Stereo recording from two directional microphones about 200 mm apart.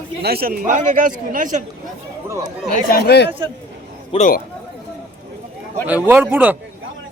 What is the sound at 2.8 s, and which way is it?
Speech, 50° left (ahead or behind).